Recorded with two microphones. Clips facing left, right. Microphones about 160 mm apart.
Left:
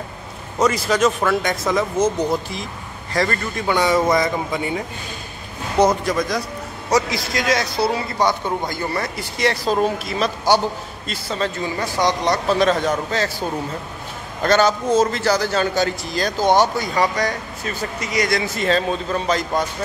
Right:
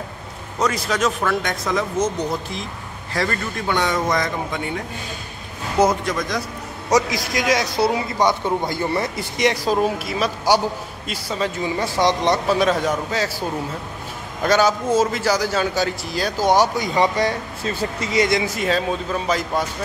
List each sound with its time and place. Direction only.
0.6 s speech: centre (ahead or behind)
3.1 s speech: centre (ahead or behind)
6.9 s a man's voice: 15° right (ahead or behind)
11.8 s speech: 25° right (ahead or behind)
12.4 s a man's voice: 10° right (ahead or behind); by 18.4 s 25° right (ahead or behind)
18.4 s a man's voice: 10° right (ahead or behind)